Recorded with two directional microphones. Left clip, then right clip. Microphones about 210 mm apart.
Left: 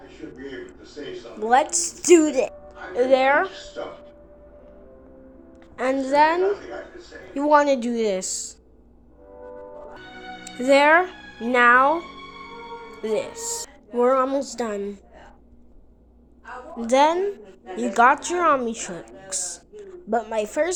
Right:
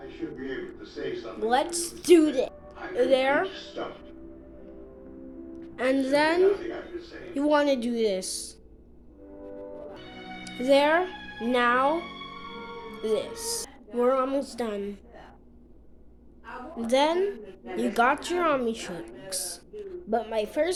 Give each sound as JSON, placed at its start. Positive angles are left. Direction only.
{"t": 1.4, "sound": "a woman's voice", "side_deg": 15}
{"t": 1.6, "sound": "a woman's voice", "side_deg": 0}
{"t": 1.9, "sound": "a woman's voice", "side_deg": 20}
{"t": 5.7, "sound": "a woman's voice", "side_deg": 5}
{"t": 10.4, "sound": "speech", "side_deg": 15}
{"t": 13.0, "sound": "a woman's voice", "side_deg": 15}
{"t": 16.7, "sound": "a woman's voice", "side_deg": 20}